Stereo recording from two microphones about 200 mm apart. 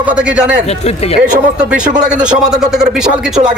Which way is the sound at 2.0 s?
5° right (ahead or behind).